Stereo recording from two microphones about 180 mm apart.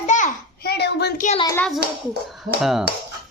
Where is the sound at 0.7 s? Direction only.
65° left (ahead or behind).